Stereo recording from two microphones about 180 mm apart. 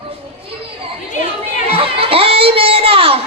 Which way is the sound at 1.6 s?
30° right (ahead or behind).